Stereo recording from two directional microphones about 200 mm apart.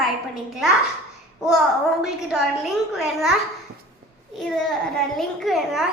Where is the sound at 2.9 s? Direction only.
Centre (ahead or behind).